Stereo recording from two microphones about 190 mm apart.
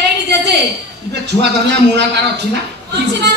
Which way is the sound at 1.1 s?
65° right (ahead or behind).